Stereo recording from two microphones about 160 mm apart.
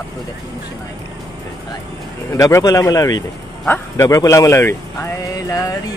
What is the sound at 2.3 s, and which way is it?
Speech, 20° left (ahead or behind).